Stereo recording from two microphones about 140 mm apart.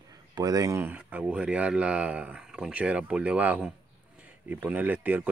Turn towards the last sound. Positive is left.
turn(degrees=-15)  # may be behind; listen again after turning